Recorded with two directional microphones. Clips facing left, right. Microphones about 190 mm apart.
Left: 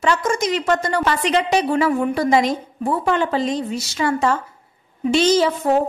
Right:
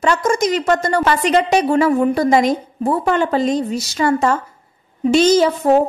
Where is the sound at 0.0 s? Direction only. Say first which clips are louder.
Right 3 dB; 45° right (ahead or behind).